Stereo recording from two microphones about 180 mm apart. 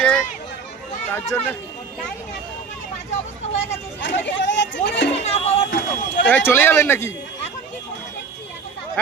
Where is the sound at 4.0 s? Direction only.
85° left.